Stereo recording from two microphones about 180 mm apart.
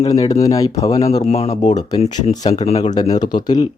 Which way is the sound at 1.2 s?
35° left (ahead or behind).